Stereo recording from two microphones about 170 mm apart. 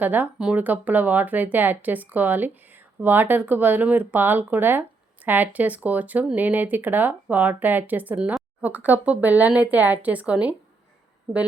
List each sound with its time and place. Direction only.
0.0 s speech: 10° right (ahead or behind)